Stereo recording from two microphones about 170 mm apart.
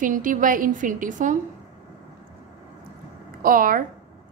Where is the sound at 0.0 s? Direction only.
50° right (ahead or behind).